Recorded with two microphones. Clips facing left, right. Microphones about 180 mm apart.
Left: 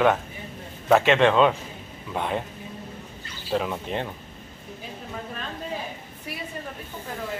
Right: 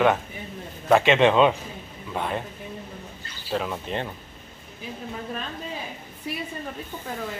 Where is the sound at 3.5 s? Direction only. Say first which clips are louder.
Left 1 dB; 5° left (ahead or behind).